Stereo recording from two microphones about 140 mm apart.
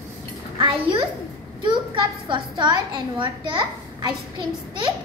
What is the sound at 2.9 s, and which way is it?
Speech, 35° right (ahead or behind).